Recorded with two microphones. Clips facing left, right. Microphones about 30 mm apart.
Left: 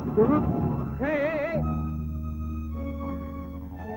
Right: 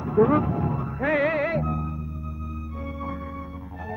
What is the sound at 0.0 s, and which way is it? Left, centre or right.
Music, right.